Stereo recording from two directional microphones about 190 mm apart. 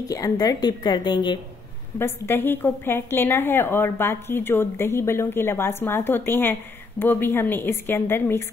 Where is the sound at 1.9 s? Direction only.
10° left (ahead or behind).